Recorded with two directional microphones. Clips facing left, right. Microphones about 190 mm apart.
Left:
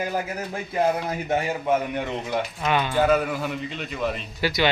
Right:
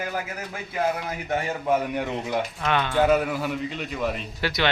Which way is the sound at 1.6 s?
5° right (ahead or behind).